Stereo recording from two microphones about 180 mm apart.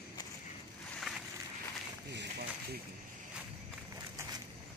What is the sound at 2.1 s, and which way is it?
Run, 65° right (ahead or behind).